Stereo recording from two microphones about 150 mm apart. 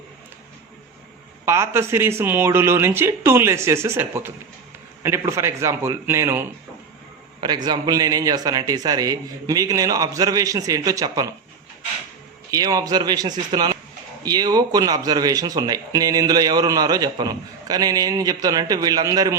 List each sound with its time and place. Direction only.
1.5 s speech: 20° right (ahead or behind)
7.4 s speech: 30° right (ahead or behind)
12.5 s speech: 25° right (ahead or behind)